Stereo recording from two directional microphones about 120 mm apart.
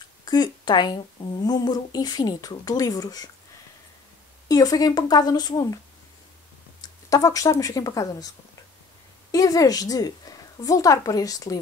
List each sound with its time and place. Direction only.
0.2 s speech: 35° left (ahead or behind)
4.5 s speech: 30° left (ahead or behind)
6.8 s speech: 30° left (ahead or behind)
9.3 s speech: 30° left (ahead or behind)